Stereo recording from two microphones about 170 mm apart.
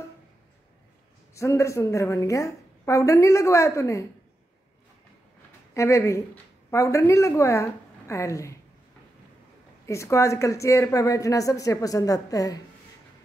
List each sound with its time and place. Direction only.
1.3 s a woman's voice: 15° left (ahead or behind)
5.8 s a woman's voice: 15° left (ahead or behind)
9.8 s a woman's voice: 15° left (ahead or behind)